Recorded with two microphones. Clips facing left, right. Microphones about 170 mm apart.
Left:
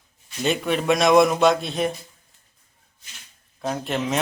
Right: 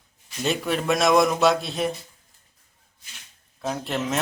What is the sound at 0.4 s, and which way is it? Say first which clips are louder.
A man's voice: left 3 dB; centre (ahead or behind).